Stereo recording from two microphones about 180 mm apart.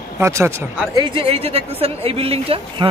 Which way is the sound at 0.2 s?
15° right (ahead or behind).